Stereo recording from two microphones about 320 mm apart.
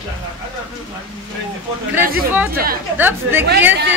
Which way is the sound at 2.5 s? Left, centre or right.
Right.